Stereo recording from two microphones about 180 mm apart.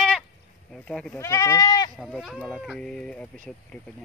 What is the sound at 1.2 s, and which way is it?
Speech, 15° left (ahead or behind).